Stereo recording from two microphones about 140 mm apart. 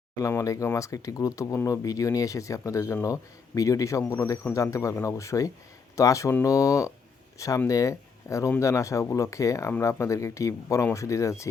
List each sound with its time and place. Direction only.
0.2 s speech: 20° left (ahead or behind)